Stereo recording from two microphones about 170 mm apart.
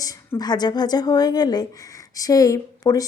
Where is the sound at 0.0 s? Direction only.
20° left (ahead or behind).